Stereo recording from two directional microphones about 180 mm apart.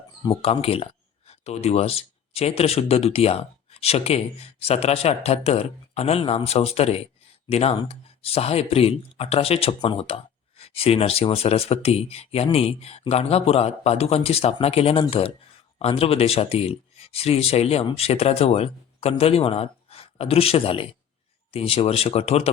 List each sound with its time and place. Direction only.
0.2 s speech: 30° left (ahead or behind)